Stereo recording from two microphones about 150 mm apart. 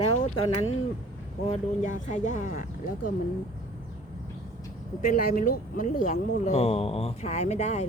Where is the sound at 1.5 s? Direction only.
55° left (ahead or behind).